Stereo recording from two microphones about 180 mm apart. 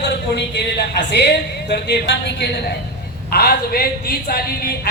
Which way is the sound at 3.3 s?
60° left (ahead or behind).